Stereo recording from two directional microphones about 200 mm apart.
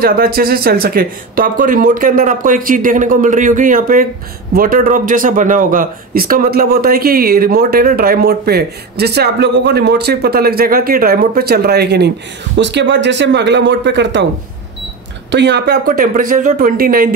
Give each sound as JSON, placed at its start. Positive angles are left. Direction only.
{"t": 0.0, "sound": "speech", "side_deg": -50}
{"t": 15.3, "sound": "speech", "side_deg": -60}